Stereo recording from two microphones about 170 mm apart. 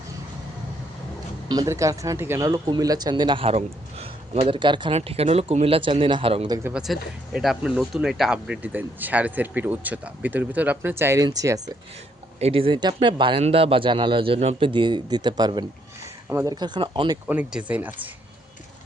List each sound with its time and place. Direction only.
1.5 s speech: 20° right (ahead or behind)
6.6 s speech: 10° right (ahead or behind)
6.8 s speech: centre (ahead or behind); by 11.7 s 20° right (ahead or behind)
12.4 s speech: 35° right (ahead or behind)
17.2 s speech: 10° right (ahead or behind)